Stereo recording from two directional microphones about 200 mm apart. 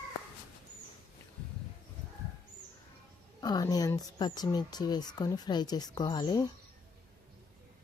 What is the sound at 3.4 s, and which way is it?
Speech, 20° left (ahead or behind).